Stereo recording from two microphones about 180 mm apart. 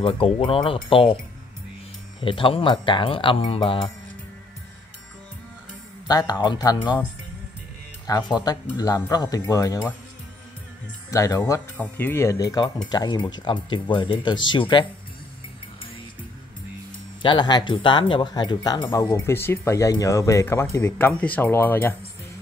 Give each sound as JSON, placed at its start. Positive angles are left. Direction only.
{"t": 0.0, "sound": "speech", "side_deg": 30}
{"t": 2.2, "sound": "speech", "side_deg": 30}
{"t": 6.0, "sound": "speech", "side_deg": 20}
{"t": 8.1, "sound": "speech", "side_deg": 25}
{"t": 11.1, "sound": "speech", "side_deg": 20}
{"t": 17.2, "sound": "speech", "side_deg": 25}